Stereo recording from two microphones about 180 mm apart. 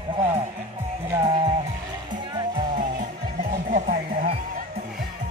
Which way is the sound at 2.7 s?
50° right (ahead or behind).